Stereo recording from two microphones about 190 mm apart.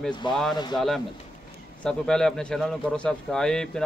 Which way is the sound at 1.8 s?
5° left (ahead or behind).